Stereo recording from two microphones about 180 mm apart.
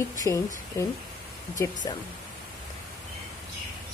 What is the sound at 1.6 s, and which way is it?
Speech, 15° left (ahead or behind).